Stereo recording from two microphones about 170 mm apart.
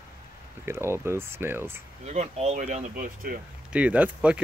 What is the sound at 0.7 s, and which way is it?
Speech, 15° right (ahead or behind).